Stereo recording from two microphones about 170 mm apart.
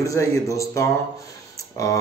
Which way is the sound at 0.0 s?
20° left (ahead or behind).